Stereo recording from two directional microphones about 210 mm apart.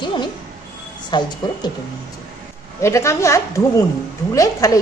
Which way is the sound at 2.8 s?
15° left (ahead or behind).